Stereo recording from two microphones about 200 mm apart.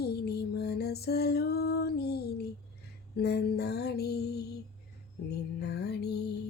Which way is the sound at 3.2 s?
55° left (ahead or behind).